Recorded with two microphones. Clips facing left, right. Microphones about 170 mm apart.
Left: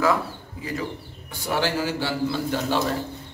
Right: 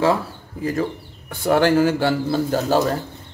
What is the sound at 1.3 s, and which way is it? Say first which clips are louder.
A man's voice: right 9 dB; 55° right (ahead or behind).